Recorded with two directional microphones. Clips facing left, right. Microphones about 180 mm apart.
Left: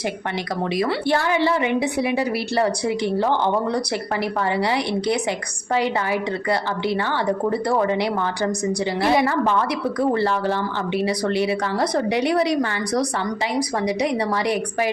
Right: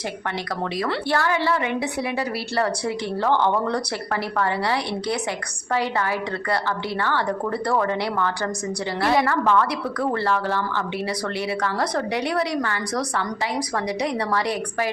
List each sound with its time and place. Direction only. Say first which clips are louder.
0.6 s a woman's voice: left 4 dB; 15° left (ahead or behind)